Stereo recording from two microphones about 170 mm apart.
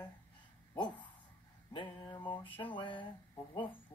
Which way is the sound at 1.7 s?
30° left (ahead or behind).